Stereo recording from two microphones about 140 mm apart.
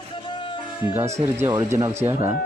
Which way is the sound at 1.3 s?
20° right (ahead or behind).